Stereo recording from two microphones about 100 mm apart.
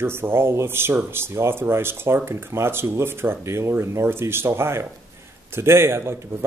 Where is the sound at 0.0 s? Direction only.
25° right (ahead or behind).